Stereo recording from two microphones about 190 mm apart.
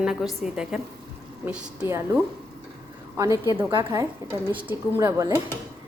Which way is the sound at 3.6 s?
20° right (ahead or behind).